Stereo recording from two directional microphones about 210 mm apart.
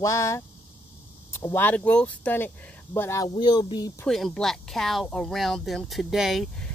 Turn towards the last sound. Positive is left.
turn(degrees=0)  # may be behind; listen again after turning